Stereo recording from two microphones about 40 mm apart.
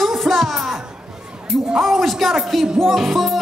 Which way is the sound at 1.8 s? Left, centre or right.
Centre.